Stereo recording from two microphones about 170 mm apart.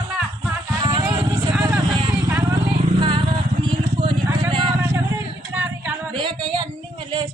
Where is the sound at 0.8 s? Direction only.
25° right (ahead or behind).